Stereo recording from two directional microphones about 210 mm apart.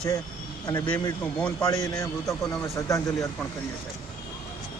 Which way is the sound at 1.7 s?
15° left (ahead or behind).